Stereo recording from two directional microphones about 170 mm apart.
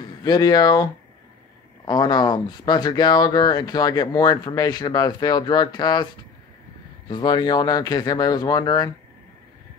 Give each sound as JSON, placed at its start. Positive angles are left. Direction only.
{"t": 0.0, "sound": "speech", "side_deg": 20}
{"t": 1.9, "sound": "speech", "side_deg": 25}
{"t": 7.1, "sound": "speech", "side_deg": 25}